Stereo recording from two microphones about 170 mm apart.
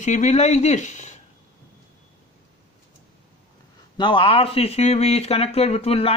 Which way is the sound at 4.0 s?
30° left (ahead or behind).